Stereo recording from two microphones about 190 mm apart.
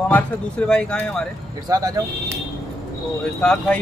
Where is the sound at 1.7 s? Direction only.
20° right (ahead or behind).